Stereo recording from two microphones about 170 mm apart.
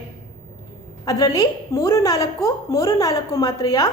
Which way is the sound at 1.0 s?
20° left (ahead or behind).